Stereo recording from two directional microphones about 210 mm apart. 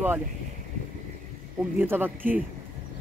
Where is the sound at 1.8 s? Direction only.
10° right (ahead or behind).